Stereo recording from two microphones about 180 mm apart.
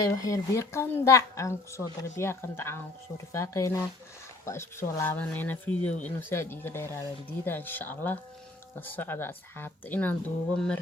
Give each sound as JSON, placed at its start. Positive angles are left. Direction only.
{"t": 0.0, "sound": "a woman's voice", "side_deg": 20}